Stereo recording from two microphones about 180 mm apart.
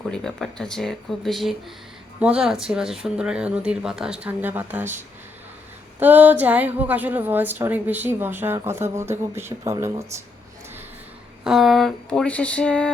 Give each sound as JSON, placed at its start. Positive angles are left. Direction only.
{"t": 0.1, "sound": "speech", "side_deg": 5}
{"t": 6.0, "sound": "a woman's voice", "side_deg": -10}
{"t": 11.4, "sound": "speech", "side_deg": 0}